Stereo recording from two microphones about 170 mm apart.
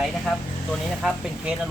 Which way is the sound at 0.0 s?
5° left (ahead or behind).